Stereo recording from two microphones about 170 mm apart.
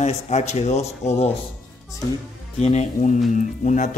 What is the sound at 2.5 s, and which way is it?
Speech, 40° left (ahead or behind).